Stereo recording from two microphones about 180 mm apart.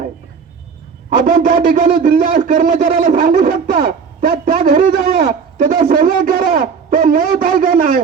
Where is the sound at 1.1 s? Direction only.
50° right (ahead or behind).